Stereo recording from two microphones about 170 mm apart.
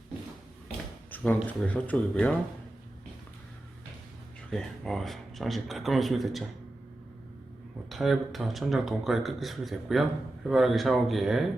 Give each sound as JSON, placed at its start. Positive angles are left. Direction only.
{"t": 1.1, "sound": "speech", "side_deg": 10}
{"t": 4.5, "sound": "speech", "side_deg": 0}
{"t": 7.9, "sound": "speech", "side_deg": 0}